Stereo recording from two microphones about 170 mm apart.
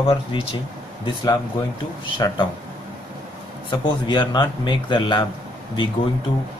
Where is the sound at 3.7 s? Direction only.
25° left (ahead or behind).